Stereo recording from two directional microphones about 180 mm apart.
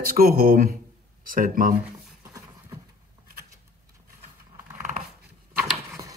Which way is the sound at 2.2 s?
20° right (ahead or behind).